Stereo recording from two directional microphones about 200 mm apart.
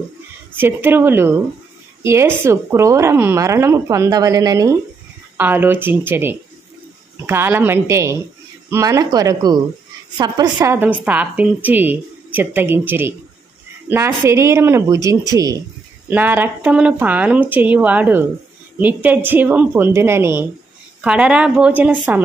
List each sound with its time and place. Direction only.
0.5 s a woman's voice: 10° right (ahead or behind)